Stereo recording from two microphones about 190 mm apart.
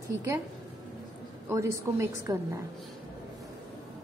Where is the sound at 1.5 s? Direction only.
15° right (ahead or behind).